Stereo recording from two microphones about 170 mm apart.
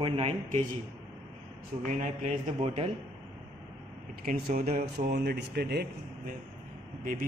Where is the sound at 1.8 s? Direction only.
45° right (ahead or behind).